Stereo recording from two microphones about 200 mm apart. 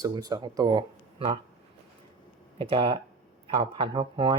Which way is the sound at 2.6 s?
30° right (ahead or behind).